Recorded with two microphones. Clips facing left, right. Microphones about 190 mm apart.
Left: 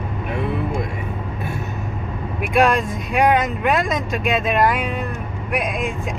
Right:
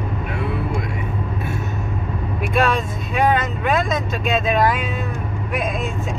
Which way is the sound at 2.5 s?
10° left (ahead or behind).